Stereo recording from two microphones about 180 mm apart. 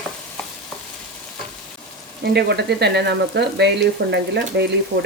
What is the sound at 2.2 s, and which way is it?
Speech, 65° right (ahead or behind).